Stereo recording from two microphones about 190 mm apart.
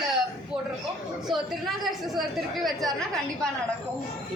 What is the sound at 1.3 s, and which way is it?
A woman's voice, centre (ahead or behind).